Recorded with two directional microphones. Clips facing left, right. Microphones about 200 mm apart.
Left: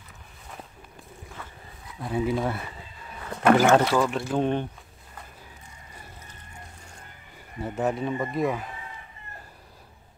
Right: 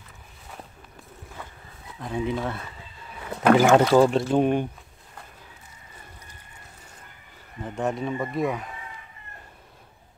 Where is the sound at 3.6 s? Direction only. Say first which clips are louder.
Right 2 dB; 15° right (ahead or behind).